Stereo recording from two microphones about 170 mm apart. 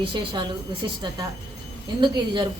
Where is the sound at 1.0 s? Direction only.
25° right (ahead or behind).